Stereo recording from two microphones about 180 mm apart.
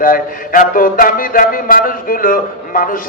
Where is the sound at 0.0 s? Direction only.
50° left (ahead or behind).